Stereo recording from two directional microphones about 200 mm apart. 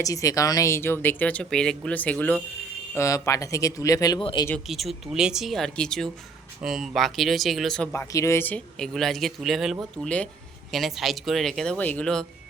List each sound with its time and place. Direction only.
0.0 s speech: 15° left (ahead or behind)
4.4 s speech: centre (ahead or behind)
7.9 s speech: 15° left (ahead or behind)